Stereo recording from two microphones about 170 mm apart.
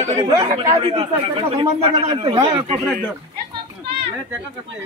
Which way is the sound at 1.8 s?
25° right (ahead or behind).